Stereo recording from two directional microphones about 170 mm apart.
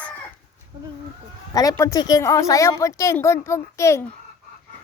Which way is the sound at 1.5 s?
20° left (ahead or behind).